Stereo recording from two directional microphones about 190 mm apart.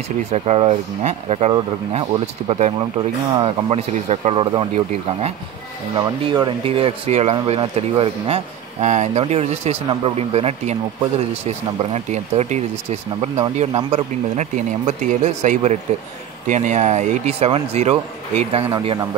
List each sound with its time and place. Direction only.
0.3 s speech: 35° right (ahead or behind)
13.9 s speech: 40° right (ahead or behind)